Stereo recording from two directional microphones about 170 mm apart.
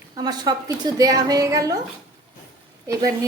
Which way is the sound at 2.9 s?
20° right (ahead or behind).